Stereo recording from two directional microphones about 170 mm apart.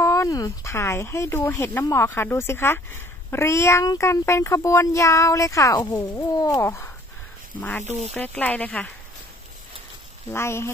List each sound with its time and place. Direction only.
0.0 s speech: 20° left (ahead or behind)
8.1 s speech: 10° left (ahead or behind)
10.3 s speech: 15° left (ahead or behind)